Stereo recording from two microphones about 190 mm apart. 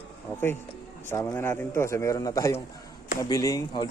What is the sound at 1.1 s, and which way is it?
A man's voice, 10° left (ahead or behind).